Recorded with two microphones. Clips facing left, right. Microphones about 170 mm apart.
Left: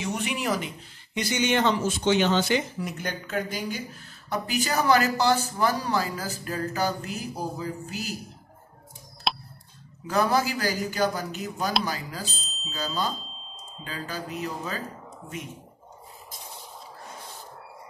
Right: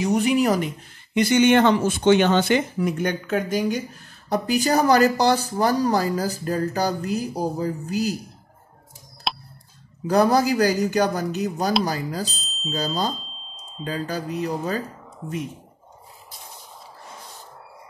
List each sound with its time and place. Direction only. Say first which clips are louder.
0.0 s speech: right 10 dB; 40° right (ahead or behind)
1.1 s speech: right 9 dB; 55° right (ahead or behind)
4.0 s speech: right 6 dB; 40° right (ahead or behind)
9.3 s a sound: even; centre (ahead or behind)
10.0 s speech: right 6 dB; 40° right (ahead or behind)